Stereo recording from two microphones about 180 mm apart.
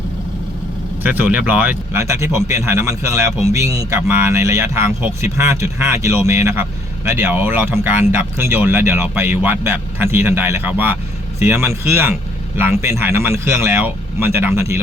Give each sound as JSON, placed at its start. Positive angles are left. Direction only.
{"t": 1.0, "sound": "speech", "side_deg": -10}